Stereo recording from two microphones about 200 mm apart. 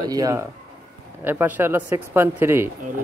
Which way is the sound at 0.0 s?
20° right (ahead or behind).